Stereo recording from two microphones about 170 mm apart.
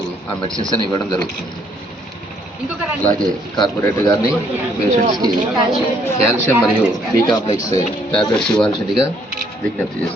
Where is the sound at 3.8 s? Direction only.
20° left (ahead or behind).